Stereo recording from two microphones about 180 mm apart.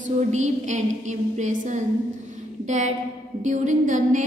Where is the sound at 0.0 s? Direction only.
40° right (ahead or behind).